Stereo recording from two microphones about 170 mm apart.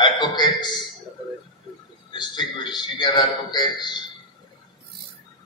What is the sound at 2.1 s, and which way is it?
A man's voice, 25° left (ahead or behind).